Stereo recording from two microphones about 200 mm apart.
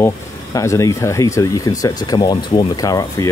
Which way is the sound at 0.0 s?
15° left (ahead or behind).